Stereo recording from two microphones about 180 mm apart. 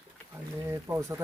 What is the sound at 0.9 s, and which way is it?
Speech, 15° right (ahead or behind).